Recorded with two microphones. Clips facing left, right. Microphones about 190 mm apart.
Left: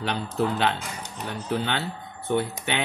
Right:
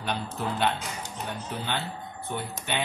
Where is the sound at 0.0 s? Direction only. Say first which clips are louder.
Left 5 dB; 70° left (ahead or behind).